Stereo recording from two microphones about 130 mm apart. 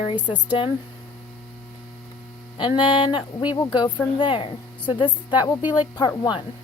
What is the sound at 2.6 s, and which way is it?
A woman's voice, 35° left (ahead or behind).